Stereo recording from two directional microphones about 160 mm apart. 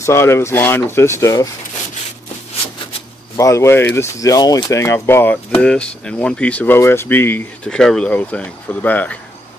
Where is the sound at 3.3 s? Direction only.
20° left (ahead or behind).